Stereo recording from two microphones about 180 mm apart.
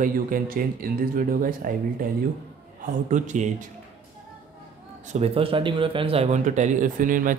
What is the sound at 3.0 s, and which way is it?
Speech, 45° right (ahead or behind).